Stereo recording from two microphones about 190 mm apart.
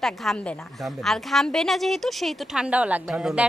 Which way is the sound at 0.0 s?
Centre (ahead or behind).